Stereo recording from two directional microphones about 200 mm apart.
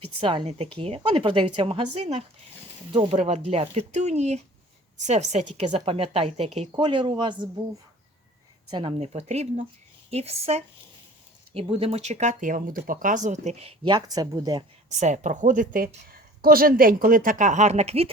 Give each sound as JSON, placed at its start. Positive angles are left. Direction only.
{"t": 0.2, "sound": "a woman's voice", "side_deg": -25}
{"t": 8.7, "sound": "a woman's voice", "side_deg": -25}
{"t": 14.8, "sound": "a woman's voice", "side_deg": -35}